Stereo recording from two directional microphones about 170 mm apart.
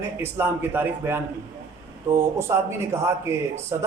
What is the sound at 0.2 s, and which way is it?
Speech, 15° right (ahead or behind).